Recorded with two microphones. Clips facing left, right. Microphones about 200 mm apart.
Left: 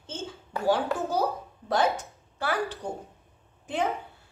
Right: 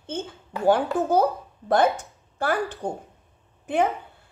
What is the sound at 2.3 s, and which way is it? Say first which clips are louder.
A woman's voice: right 4 dB; 50° right (ahead or behind).